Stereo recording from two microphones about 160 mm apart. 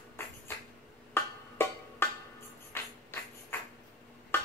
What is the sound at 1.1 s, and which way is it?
Music, 15° left (ahead or behind).